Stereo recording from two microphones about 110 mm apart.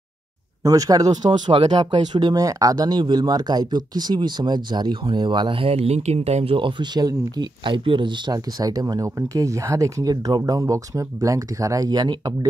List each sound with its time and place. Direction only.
0.7 s speech: 35° right (ahead or behind); by 8.1 s 50° right (ahead or behind)
8.3 s speech: 35° right (ahead or behind)